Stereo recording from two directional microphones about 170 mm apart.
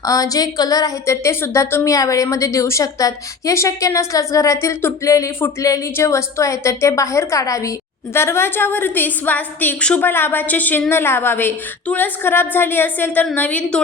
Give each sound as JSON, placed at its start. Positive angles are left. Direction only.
{"t": 0.0, "sound": "a woman's voice", "side_deg": 20}